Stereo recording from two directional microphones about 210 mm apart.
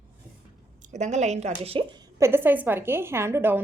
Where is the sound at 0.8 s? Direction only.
35° right (ahead or behind).